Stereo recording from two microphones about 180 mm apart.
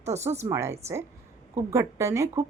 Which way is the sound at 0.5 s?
15° right (ahead or behind).